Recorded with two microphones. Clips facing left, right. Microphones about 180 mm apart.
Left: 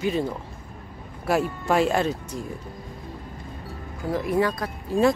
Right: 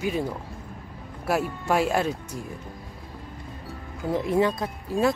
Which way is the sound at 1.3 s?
5° right (ahead or behind).